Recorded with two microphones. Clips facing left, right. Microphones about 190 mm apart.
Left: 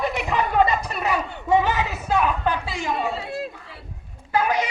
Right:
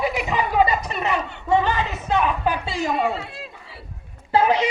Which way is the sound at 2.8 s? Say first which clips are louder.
Right 3 dB; 50° right (ahead or behind).